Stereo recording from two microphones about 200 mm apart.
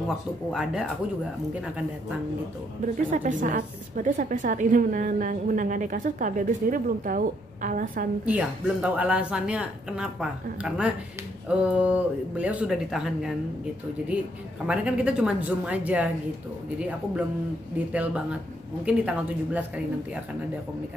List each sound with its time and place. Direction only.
0.5 s speech: centre (ahead or behind)
3.1 s a woman's voice: 40° right (ahead or behind)
8.3 s speech: 5° right (ahead or behind)
14.7 s speech: 5° right (ahead or behind)
17.9 s speech: 5° right (ahead or behind)